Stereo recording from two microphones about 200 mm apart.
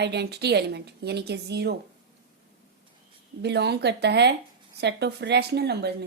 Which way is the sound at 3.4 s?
55° right (ahead or behind).